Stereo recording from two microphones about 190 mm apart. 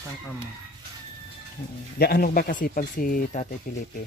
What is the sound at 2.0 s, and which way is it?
Speech, 50° left (ahead or behind).